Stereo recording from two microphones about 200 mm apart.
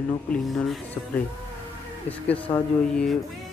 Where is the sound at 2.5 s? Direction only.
5° left (ahead or behind).